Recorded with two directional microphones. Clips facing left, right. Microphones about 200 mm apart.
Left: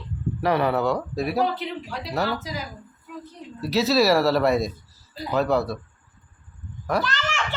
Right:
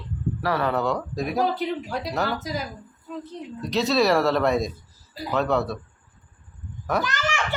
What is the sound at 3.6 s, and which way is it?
Speech, 5° left (ahead or behind).